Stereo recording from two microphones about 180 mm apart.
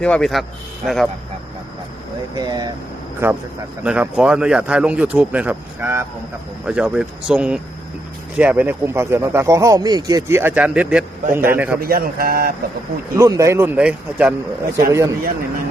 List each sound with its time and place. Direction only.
0.0 s speech: 5° left (ahead or behind)
2.3 s speech: 20° right (ahead or behind)
11.8 s speech: 55° right (ahead or behind)
13.1 s speech: 15° right (ahead or behind)